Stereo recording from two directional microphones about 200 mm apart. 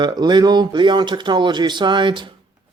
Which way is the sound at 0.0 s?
20° right (ahead or behind).